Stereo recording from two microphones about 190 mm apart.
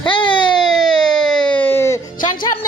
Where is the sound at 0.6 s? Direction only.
5° left (ahead or behind).